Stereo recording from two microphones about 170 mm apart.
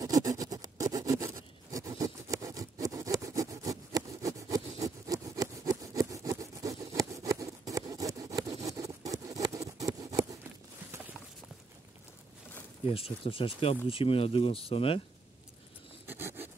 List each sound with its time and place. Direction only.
0.0 s a sound: 20° right (ahead or behind)
12.9 s speech: 35° left (ahead or behind)
16.1 s patter: 10° right (ahead or behind)